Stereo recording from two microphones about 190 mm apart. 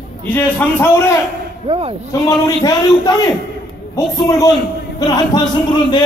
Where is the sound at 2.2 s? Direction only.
20° left (ahead or behind).